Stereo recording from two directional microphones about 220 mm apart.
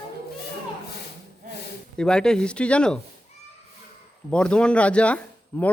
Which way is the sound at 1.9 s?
5° left (ahead or behind).